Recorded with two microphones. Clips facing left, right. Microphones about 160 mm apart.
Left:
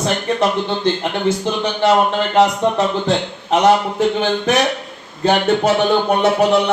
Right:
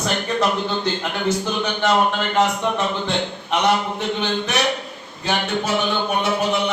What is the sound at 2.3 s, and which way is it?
Speech, 35° left (ahead or behind).